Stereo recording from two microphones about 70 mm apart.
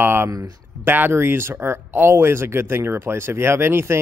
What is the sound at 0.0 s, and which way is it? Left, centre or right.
Speech, right.